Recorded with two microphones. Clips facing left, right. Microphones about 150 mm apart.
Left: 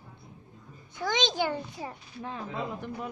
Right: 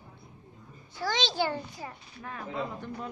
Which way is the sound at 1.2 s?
15° left (ahead or behind).